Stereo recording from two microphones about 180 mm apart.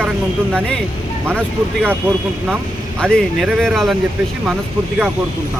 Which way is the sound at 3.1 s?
Centre (ahead or behind).